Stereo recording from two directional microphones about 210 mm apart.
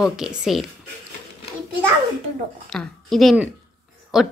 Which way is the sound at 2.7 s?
Centre (ahead or behind).